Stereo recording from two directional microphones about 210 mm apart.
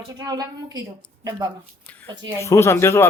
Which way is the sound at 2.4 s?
10° left (ahead or behind).